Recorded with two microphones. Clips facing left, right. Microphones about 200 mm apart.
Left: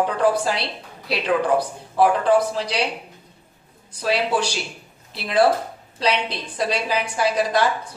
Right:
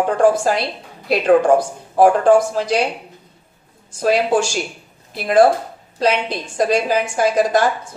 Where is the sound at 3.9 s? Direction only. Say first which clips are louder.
Right 6 dB; 45° right (ahead or behind).